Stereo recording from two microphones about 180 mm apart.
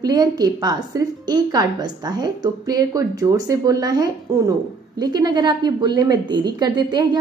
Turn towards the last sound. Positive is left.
turn(degrees=-25)  # may be behind; listen again after turning